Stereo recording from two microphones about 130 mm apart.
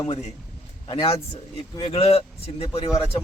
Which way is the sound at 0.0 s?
50° left (ahead or behind).